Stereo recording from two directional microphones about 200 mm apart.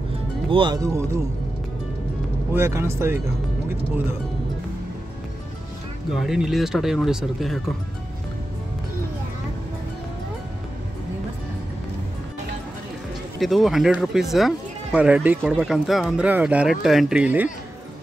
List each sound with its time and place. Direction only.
0.5 s speech: 25° right (ahead or behind)
2.5 s speech: 10° right (ahead or behind)
6.1 s speech: centre (ahead or behind)
13.4 s speech: centre (ahead or behind)